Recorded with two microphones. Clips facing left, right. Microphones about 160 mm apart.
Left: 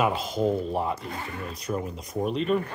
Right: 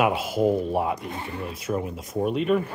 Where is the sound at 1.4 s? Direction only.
5° right (ahead or behind).